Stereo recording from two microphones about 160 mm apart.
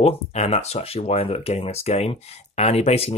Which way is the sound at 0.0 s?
45° left (ahead or behind).